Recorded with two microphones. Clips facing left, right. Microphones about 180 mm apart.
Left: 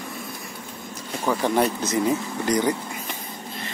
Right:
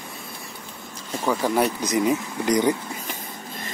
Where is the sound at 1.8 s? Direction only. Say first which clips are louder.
Right 1 dB; 15° right (ahead or behind).